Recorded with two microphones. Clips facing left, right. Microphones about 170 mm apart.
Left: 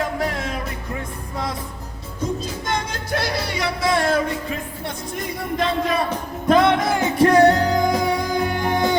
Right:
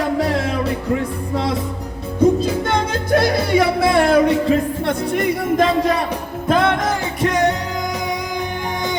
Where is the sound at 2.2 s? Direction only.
60° right (ahead or behind).